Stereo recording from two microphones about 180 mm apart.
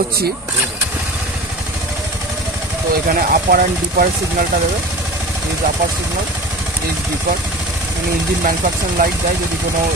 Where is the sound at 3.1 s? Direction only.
55° right (ahead or behind).